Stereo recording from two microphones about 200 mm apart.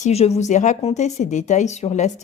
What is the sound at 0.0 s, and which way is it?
Speech, 30° left (ahead or behind).